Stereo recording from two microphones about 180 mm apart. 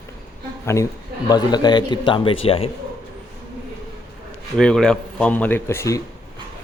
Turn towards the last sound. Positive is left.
turn(degrees=15)  # may be behind; listen again after turning